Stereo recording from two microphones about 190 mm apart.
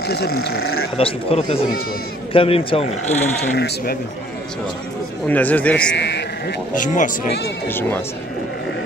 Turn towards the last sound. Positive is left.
turn(degrees=10)  # may be behind; listen again after turning